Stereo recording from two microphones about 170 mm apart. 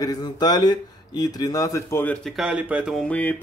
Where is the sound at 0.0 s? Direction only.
25° left (ahead or behind).